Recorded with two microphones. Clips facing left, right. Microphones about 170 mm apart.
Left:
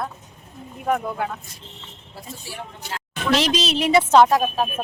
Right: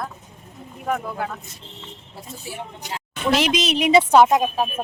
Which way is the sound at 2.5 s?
20° right (ahead or behind).